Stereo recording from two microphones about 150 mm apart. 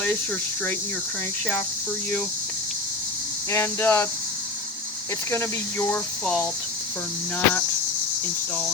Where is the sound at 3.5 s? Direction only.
15° left (ahead or behind).